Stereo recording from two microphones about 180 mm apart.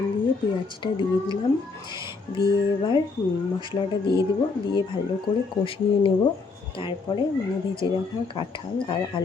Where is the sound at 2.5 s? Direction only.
25° left (ahead or behind).